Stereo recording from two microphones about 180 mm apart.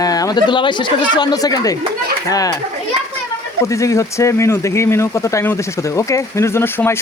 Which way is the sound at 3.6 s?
15° left (ahead or behind).